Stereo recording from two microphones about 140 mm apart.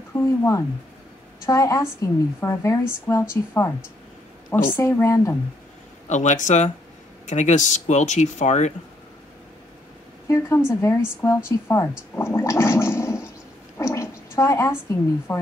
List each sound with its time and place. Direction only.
0.1 s a woman's voice: 20° left (ahead or behind)
6.0 s speech: 60° left (ahead or behind)
10.2 s a woman's voice: 20° left (ahead or behind)
12.2 s gargling: 20° left (ahead or behind)
14.9 s a woman's voice: 25° left (ahead or behind)